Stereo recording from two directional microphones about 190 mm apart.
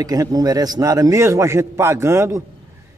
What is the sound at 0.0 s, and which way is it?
A man's voice, 20° right (ahead or behind).